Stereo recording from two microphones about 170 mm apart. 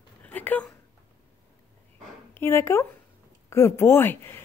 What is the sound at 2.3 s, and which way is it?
Speech, 15° left (ahead or behind).